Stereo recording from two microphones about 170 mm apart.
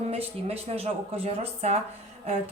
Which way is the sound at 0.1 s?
35° right (ahead or behind).